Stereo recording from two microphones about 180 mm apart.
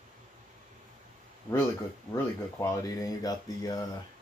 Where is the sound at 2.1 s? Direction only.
15° left (ahead or behind).